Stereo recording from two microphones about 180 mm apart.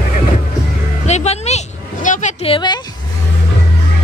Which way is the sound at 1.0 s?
40° left (ahead or behind).